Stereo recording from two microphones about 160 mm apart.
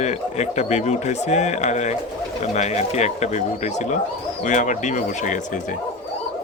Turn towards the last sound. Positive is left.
turn(degrees=50)  # may be behind; listen again after turning